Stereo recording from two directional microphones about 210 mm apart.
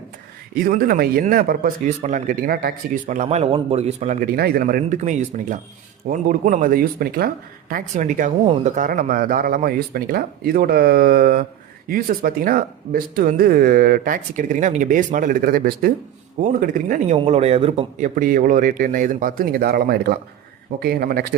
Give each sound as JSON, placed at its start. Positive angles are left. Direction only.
{"t": 0.5, "sound": "speech", "side_deg": -45}
{"t": 17.2, "sound": "speech", "side_deg": -30}